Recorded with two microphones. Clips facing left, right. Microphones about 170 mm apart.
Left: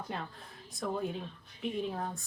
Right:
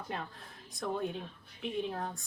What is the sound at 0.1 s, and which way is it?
A woman's voice, centre (ahead or behind).